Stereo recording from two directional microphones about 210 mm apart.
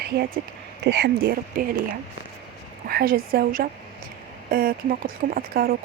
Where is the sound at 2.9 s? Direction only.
45° right (ahead or behind).